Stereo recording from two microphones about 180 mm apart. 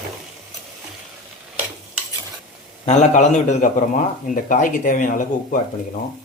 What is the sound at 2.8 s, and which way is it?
A man's voice, 40° left (ahead or behind).